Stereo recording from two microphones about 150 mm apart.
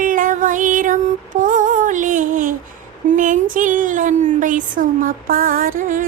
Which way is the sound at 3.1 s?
60° right (ahead or behind).